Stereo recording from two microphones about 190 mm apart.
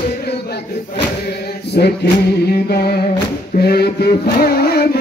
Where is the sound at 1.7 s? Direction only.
60° left (ahead or behind).